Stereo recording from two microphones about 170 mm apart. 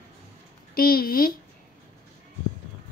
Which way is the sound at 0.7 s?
60° left (ahead or behind).